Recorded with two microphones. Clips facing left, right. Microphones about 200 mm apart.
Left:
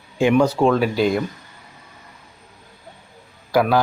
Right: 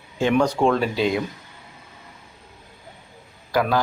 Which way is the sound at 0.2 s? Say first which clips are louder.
Left 3 dB; 10° left (ahead or behind).